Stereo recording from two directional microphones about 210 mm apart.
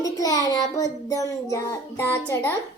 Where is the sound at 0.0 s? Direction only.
15° left (ahead or behind).